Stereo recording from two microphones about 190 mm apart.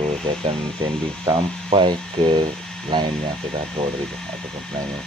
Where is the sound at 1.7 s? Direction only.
25° right (ahead or behind).